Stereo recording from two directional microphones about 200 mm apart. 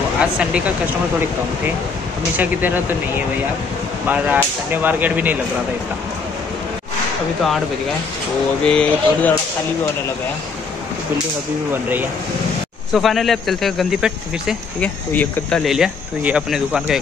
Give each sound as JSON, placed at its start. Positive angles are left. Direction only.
{"t": 0.2, "sound": "speech", "side_deg": -5}
{"t": 2.3, "sound": "speech", "side_deg": -10}
{"t": 4.1, "sound": "speech", "side_deg": -10}
{"t": 8.6, "sound": "speech", "side_deg": 5}
{"t": 11.7, "sound": "speech", "side_deg": -10}